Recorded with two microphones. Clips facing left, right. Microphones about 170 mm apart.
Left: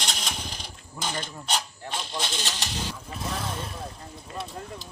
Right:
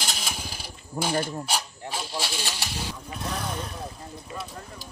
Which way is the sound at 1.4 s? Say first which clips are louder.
Even; 5° right (ahead or behind).